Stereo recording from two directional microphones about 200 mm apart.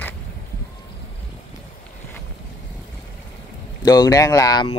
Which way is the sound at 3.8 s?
20° left (ahead or behind).